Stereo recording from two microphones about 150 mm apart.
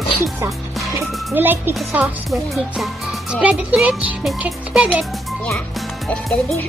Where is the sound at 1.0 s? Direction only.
15° right (ahead or behind).